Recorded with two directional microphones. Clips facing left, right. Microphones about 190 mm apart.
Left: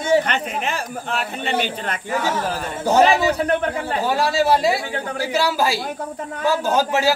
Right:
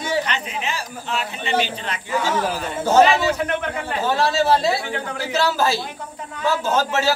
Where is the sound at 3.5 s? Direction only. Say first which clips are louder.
Left 4 dB; 35° left (ahead or behind).